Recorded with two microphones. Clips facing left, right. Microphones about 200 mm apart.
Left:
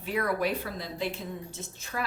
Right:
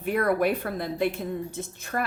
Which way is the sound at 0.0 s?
55° right (ahead or behind).